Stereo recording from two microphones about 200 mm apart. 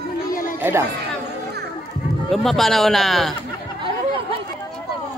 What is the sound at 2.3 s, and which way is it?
Speech, centre (ahead or behind).